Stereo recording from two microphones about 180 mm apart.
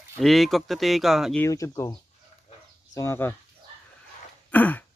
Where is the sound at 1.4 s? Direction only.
15° left (ahead or behind).